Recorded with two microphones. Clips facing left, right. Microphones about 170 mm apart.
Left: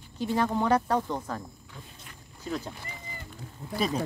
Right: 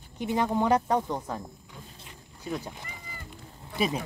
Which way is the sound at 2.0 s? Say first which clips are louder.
Even; 15° right (ahead or behind).